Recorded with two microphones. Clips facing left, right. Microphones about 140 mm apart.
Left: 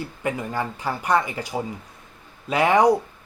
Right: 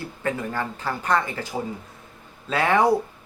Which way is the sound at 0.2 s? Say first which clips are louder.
Even; 15° left (ahead or behind).